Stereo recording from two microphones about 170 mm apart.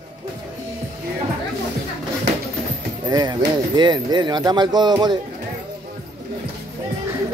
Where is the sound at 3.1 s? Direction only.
25° right (ahead or behind).